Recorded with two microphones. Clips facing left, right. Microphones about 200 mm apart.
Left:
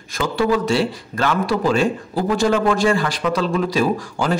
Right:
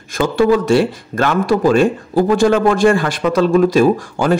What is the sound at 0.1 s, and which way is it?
A man's voice, 50° right (ahead or behind).